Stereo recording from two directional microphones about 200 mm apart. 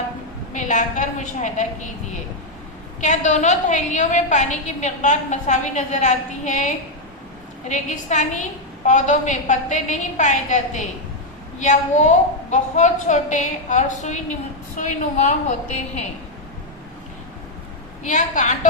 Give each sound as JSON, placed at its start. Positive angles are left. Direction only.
{"t": 0.5, "sound": "a woman's voice", "side_deg": 40}
{"t": 3.0, "sound": "a woman's voice", "side_deg": 35}
{"t": 18.0, "sound": "a woman's voice", "side_deg": 35}